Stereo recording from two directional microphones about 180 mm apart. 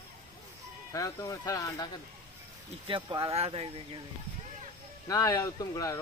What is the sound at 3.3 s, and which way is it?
Speech, 35° right (ahead or behind).